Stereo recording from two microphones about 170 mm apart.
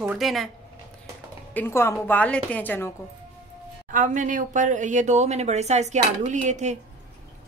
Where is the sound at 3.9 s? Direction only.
50° right (ahead or behind).